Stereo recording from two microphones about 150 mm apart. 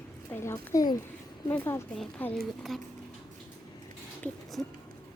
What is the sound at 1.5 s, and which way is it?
Speech, 15° left (ahead or behind).